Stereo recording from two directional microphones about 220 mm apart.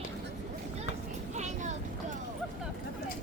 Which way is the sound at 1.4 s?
30° right (ahead or behind).